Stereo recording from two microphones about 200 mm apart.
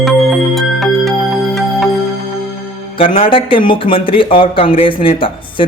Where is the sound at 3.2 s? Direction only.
25° left (ahead or behind).